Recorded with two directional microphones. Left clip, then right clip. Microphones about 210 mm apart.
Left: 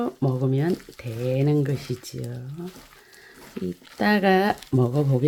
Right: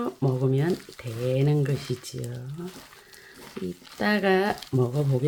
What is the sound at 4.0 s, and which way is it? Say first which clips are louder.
Speech: left 3 dB; 35° left (ahead or behind).